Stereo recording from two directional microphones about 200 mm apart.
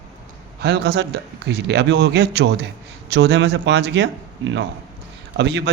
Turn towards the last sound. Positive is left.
turn(degrees=-60)  # may be behind; listen again after turning